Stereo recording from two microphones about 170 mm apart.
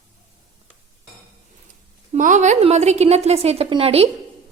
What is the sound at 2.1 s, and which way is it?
A woman's voice, 45° right (ahead or behind).